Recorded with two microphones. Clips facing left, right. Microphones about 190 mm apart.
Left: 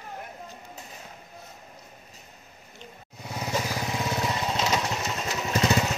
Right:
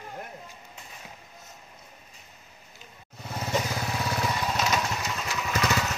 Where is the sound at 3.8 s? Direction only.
20° left (ahead or behind).